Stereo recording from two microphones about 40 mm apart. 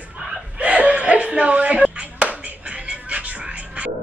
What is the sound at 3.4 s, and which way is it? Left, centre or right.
Music, right.